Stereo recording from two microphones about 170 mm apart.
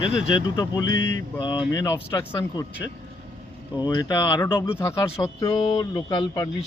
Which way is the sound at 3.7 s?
25° left (ahead or behind).